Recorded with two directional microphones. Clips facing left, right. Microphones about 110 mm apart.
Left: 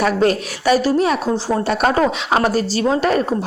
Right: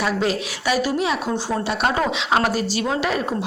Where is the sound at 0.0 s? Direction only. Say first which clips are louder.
Left 6 dB; 45° left (ahead or behind).